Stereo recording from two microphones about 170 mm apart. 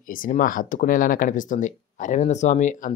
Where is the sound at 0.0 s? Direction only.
55° left (ahead or behind).